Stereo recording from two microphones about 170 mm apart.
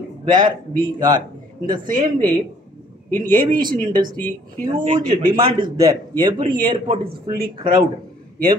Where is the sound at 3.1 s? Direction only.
50° right (ahead or behind).